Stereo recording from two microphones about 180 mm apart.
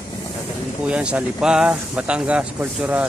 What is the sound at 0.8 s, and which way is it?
Speech, 5° right (ahead or behind).